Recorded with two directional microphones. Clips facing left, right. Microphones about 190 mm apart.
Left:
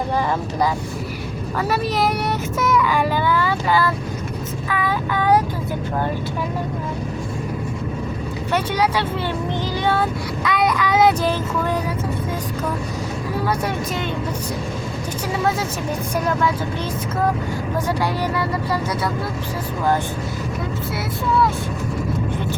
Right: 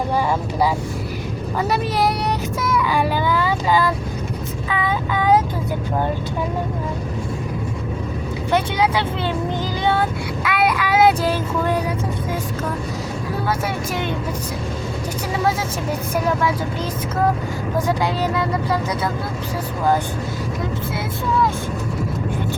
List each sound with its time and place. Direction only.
1.5 s speech: 15° right (ahead or behind)
4.7 s child singing: 20° right (ahead or behind)
10.4 s child singing: 5° right (ahead or behind)
17.8 s speech: 15° right (ahead or behind)